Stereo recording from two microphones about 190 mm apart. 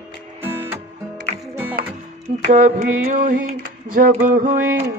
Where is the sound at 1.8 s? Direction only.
45° right (ahead or behind).